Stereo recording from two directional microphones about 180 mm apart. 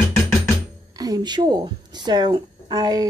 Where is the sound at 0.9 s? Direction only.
20° right (ahead or behind).